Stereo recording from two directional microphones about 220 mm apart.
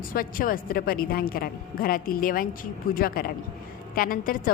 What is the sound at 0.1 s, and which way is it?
A woman's voice, 40° left (ahead or behind).